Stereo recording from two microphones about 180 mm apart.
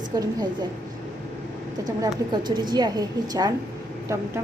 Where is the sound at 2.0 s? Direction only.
25° right (ahead or behind).